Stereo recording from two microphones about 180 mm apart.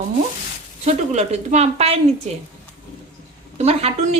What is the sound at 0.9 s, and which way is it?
Speech, 40° right (ahead or behind).